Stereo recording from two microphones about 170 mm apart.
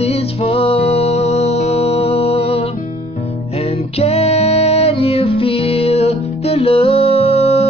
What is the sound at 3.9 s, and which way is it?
Music, 40° left (ahead or behind).